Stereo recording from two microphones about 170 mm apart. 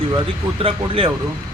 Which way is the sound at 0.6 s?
30° right (ahead or behind).